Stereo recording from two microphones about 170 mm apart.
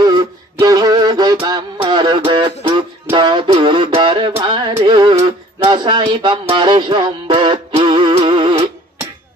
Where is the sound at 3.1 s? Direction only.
30° right (ahead or behind).